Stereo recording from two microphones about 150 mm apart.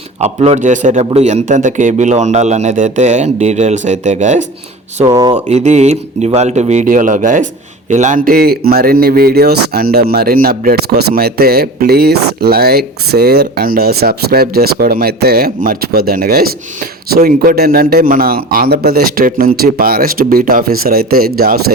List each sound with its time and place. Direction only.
0.2 s a man's voice: 45° right (ahead or behind)
5.0 s speech: 30° right (ahead or behind)
5.3 s a man's voice: 50° right (ahead or behind); by 21.6 s 90° right